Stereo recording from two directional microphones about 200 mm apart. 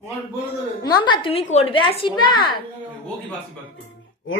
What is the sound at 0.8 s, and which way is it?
A woman's voice, 25° left (ahead or behind).